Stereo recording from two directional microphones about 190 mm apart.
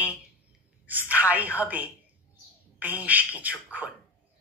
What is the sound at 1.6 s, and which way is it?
A woman's voice, 10° right (ahead or behind).